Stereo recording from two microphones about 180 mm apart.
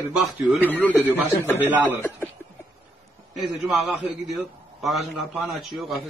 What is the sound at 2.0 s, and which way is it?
Speech, 10° left (ahead or behind).